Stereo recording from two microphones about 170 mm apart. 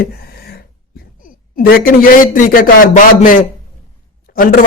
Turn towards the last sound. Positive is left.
turn(degrees=60)  # may be behind; listen again after turning